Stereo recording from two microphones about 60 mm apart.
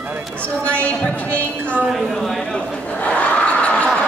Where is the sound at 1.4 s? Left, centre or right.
Right.